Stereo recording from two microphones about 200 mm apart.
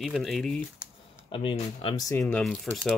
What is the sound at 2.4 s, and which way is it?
Speech, 5° left (ahead or behind).